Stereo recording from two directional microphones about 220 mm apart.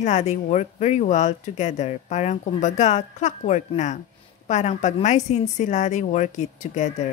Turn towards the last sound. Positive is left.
turn(degrees=35)  # may be behind; listen again after turning